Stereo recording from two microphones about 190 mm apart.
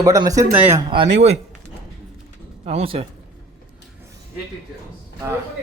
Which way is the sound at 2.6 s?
35° right (ahead or behind).